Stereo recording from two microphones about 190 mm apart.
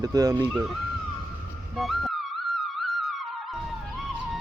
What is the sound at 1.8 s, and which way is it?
Music, centre (ahead or behind).